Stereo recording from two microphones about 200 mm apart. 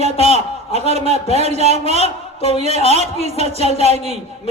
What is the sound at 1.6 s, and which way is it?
A man's voice, 30° left (ahead or behind).